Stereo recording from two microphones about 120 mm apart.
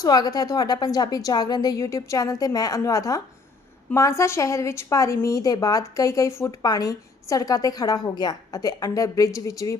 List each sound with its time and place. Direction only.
0.0 s a woman's voice: 35° left (ahead or behind)